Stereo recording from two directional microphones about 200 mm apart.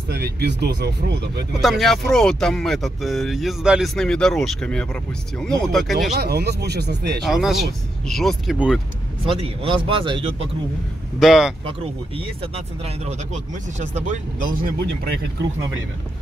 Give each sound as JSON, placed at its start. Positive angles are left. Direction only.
{"t": 0.1, "sound": "speech", "side_deg": -55}
{"t": 1.6, "sound": "speech", "side_deg": 0}
{"t": 6.1, "sound": "speech", "side_deg": -55}
{"t": 7.2, "sound": "speech", "side_deg": 0}
{"t": 9.2, "sound": "speech", "side_deg": -25}
{"t": 11.1, "sound": "speech", "side_deg": 0}
{"t": 12.4, "sound": "speech", "side_deg": -30}